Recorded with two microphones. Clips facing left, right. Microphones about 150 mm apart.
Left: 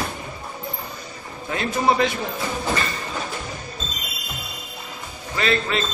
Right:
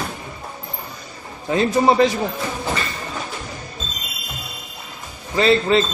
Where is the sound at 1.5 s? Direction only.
30° right (ahead or behind).